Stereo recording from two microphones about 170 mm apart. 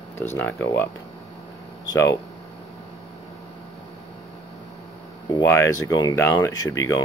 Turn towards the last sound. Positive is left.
turn(degrees=20)  # may be behind; listen again after turning